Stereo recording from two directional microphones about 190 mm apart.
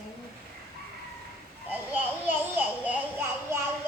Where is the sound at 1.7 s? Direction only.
10° right (ahead or behind).